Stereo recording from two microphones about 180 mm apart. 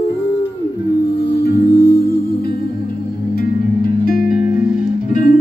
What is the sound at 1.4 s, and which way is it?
Music, 60° left (ahead or behind).